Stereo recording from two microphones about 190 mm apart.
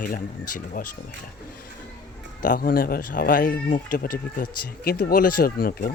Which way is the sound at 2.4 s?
50° left (ahead or behind).